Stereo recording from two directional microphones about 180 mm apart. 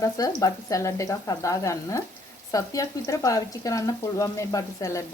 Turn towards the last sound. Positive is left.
turn(degrees=15)  # may be behind; listen again after turning